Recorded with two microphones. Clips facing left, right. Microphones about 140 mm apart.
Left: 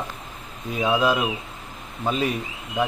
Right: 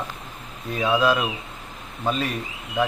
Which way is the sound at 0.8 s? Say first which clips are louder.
Even; 15° left (ahead or behind).